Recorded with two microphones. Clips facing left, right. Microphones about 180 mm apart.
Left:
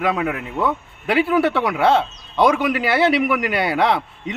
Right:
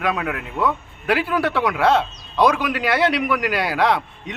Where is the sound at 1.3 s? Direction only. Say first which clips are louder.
Left 2 dB; centre (ahead or behind).